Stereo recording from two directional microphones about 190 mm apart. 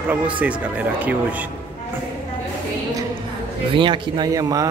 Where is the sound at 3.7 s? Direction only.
25° right (ahead or behind).